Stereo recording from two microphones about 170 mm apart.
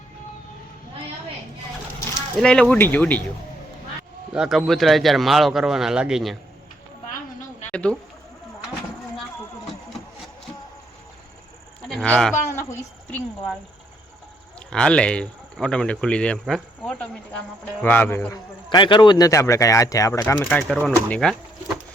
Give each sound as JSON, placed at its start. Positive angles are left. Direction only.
{"t": 2.4, "sound": "speech", "side_deg": 5}
{"t": 4.3, "sound": "speech", "side_deg": -5}
{"t": 7.7, "sound": "speech", "side_deg": 5}
{"t": 11.9, "sound": "speech", "side_deg": 5}
{"t": 14.7, "sound": "speech", "side_deg": 5}
{"t": 18.7, "sound": "speech", "side_deg": 25}